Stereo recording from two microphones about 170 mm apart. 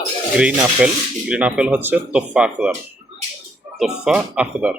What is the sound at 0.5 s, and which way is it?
Speech, 10° right (ahead or behind).